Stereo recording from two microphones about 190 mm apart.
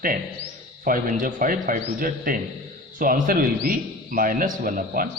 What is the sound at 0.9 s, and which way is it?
A man's voice, 45° right (ahead or behind).